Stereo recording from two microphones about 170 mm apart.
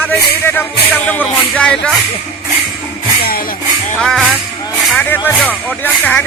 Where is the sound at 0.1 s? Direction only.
10° left (ahead or behind).